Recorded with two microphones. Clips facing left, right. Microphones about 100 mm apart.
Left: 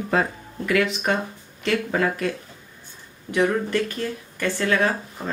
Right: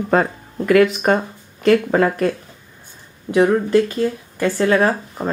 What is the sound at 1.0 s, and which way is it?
Speech, 50° right (ahead or behind).